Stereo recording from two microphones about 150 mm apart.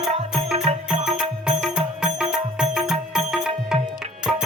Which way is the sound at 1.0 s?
5° right (ahead or behind).